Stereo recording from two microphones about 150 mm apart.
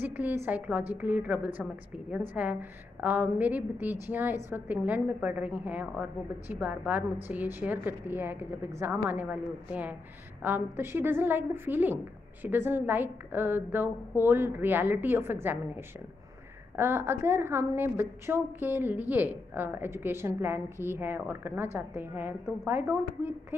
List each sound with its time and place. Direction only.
0.0 s a woman's voice: 10° right (ahead or behind)